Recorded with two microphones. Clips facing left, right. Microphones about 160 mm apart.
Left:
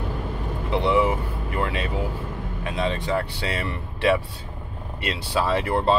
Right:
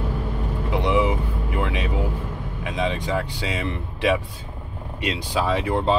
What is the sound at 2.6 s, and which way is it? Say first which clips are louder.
Speech: right 1 dB; 15° right (ahead or behind).